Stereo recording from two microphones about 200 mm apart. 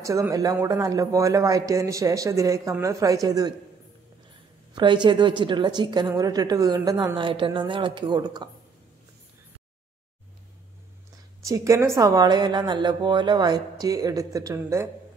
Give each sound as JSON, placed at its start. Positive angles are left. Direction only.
{"t": 0.0, "sound": "speech", "side_deg": -15}
{"t": 4.7, "sound": "a woman's voice", "side_deg": -20}
{"t": 11.4, "sound": "speech", "side_deg": -15}